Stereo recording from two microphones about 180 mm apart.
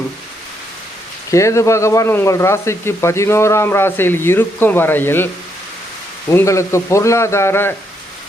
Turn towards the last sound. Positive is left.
turn(degrees=15)  # may be behind; listen again after turning